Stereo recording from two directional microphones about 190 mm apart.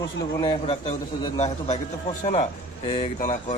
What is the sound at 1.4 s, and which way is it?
A man's voice, 35° left (ahead or behind).